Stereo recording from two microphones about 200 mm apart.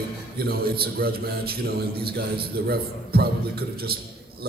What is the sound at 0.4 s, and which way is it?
Speech, 50° right (ahead or behind).